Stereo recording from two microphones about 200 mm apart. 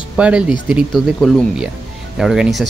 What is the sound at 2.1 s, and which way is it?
Speech, centre (ahead or behind).